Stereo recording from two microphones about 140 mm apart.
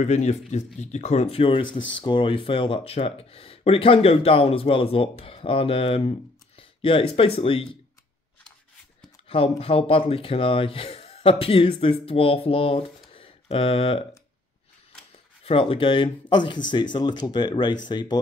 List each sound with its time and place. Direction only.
0.0 s speech: 55° left (ahead or behind)
9.3 s speech: 45° left (ahead or behind)
13.1 s a sound: 40° left (ahead or behind)
15.4 s speech: 40° left (ahead or behind)